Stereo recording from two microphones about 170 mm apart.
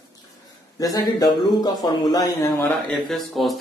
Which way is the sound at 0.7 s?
20° left (ahead or behind).